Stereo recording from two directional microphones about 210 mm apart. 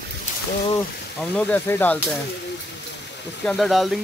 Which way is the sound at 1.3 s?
10° left (ahead or behind).